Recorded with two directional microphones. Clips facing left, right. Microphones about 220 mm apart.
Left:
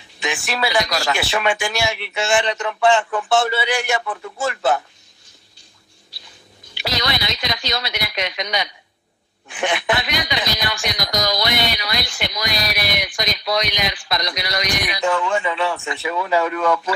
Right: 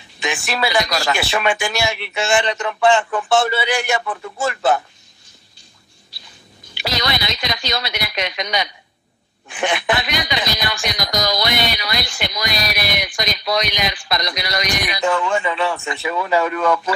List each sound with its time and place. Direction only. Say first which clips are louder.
0.3 s speech: right 1 dB; 50° right (ahead or behind)
6.8 s speech: right 1 dB; 50° right (ahead or behind)